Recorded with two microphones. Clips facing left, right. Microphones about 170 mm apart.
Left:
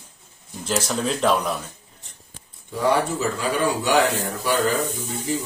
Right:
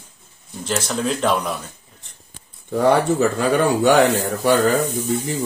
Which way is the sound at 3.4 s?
55° right (ahead or behind).